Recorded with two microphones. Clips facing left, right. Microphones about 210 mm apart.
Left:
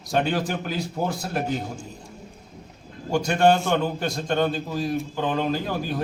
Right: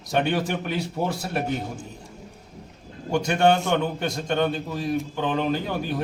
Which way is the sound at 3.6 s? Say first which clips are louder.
Even; 5° left (ahead or behind).